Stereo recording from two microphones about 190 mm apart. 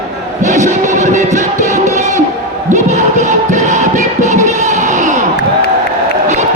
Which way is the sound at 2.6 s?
40° right (ahead or behind).